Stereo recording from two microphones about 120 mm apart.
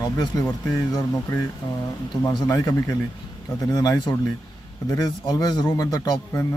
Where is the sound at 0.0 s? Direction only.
35° left (ahead or behind).